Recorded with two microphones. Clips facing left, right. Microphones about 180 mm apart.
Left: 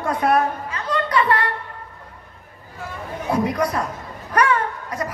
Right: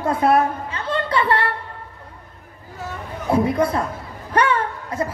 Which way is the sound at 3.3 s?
25° right (ahead or behind).